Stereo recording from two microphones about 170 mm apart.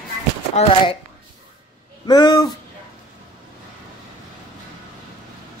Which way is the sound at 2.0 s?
25° left (ahead or behind).